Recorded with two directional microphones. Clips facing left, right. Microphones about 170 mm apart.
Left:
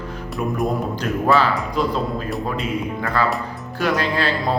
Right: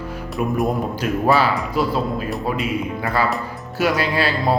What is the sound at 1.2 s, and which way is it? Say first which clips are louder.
Speech: even; 10° right (ahead or behind).